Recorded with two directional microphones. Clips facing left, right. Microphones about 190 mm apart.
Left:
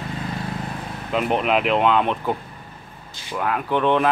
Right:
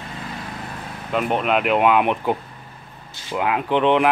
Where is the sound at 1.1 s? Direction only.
Centre (ahead or behind).